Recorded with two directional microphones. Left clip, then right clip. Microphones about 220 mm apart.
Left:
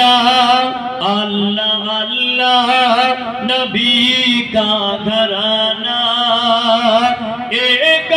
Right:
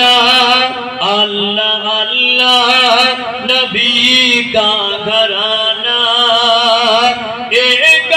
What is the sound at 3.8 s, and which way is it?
Mantra, 60° left (ahead or behind).